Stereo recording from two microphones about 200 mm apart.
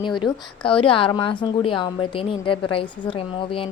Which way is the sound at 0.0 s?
25° left (ahead or behind).